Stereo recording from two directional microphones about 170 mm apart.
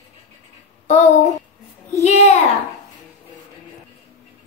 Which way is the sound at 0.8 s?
45° left (ahead or behind).